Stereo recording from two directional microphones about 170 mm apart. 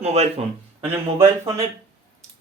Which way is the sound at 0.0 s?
40° right (ahead or behind).